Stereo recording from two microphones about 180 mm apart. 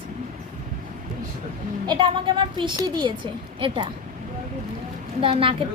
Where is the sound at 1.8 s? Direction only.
25° right (ahead or behind).